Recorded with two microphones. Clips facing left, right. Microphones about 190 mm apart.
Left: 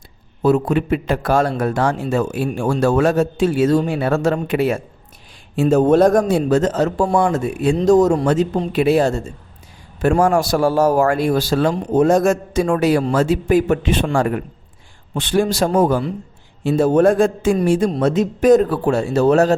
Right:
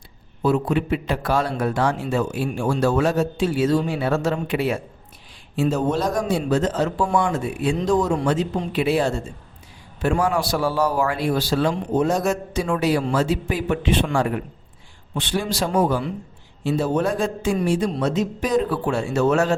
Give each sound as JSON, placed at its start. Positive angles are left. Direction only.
{"t": 0.4, "sound": "a man's voice", "side_deg": 45}